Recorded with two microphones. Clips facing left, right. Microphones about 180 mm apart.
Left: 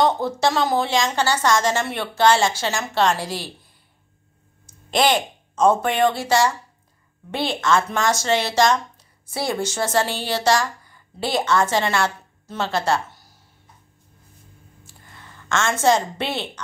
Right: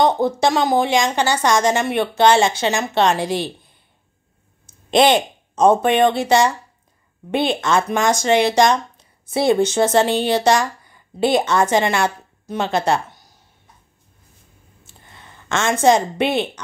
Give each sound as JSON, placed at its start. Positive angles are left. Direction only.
{"t": 0.0, "sound": "a woman's voice", "side_deg": -15}
{"t": 4.6, "sound": "speech", "side_deg": -20}
{"t": 14.9, "sound": "a woman's voice", "side_deg": -20}